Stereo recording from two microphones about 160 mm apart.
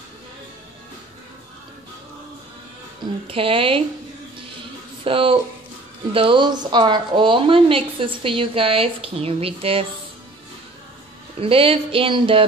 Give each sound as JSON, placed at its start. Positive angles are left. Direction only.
{"t": 3.3, "sound": "a woman's voice", "side_deg": -35}
{"t": 5.0, "sound": "a woman's voice", "side_deg": -35}
{"t": 11.3, "sound": "a woman's voice", "side_deg": -35}